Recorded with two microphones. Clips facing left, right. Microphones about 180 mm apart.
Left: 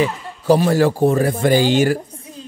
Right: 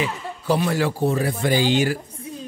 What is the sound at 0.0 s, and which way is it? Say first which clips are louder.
Speech: left 6 dB; 40° left (ahead or behind).